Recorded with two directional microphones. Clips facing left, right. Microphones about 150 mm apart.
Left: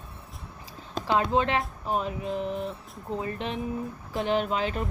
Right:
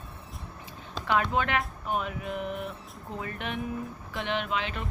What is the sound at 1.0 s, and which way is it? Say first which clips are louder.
A woman's voice: left 3 dB; 30° left (ahead or behind).